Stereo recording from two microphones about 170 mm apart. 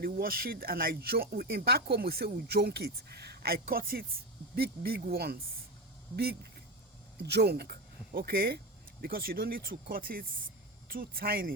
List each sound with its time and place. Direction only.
0.0 s speech: 60° right (ahead or behind)